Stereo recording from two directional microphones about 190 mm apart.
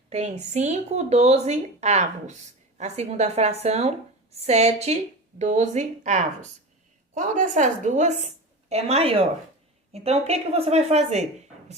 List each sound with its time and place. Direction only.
0.1 s speech: 35° right (ahead or behind)